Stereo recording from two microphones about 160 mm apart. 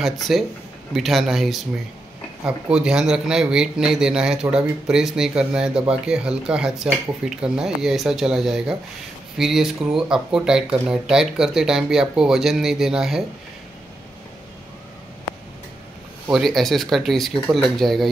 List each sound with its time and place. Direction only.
0.0 s a man's voice: centre (ahead or behind)
16.3 s a man's voice: centre (ahead or behind)